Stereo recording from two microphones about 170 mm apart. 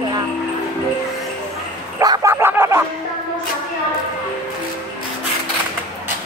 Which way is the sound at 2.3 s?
15° right (ahead or behind).